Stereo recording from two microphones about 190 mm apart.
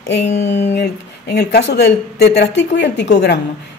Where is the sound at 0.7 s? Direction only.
60° left (ahead or behind).